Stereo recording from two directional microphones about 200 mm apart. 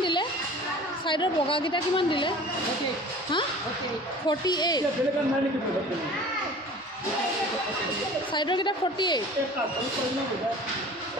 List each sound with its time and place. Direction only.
0.0 s a sound: 25° left (ahead or behind)
1.0 s a woman's voice: 25° left (ahead or behind)
4.3 s a woman's voice: 20° left (ahead or behind)
8.3 s a woman's voice: 25° left (ahead or behind)